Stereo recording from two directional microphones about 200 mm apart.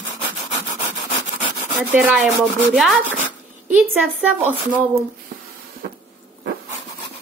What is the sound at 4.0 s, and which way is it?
A woman's voice, 10° right (ahead or behind).